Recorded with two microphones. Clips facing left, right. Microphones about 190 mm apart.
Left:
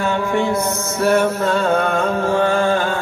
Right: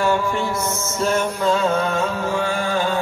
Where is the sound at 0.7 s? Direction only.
60° left (ahead or behind).